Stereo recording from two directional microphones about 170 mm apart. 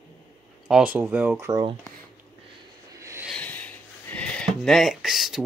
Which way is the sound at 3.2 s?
5° left (ahead or behind).